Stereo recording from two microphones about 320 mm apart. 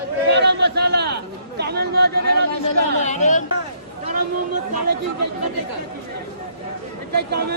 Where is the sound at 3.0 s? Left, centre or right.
Left.